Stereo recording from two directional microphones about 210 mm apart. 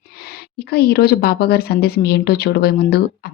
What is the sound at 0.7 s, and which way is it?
Speech, 50° left (ahead or behind).